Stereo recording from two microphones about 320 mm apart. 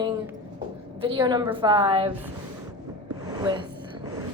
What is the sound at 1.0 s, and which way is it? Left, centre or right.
A woman's voice, centre.